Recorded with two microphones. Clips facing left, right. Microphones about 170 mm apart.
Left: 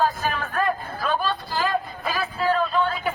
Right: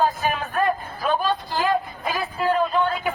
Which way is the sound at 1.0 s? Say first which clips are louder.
Right 3 dB; 15° right (ahead or behind).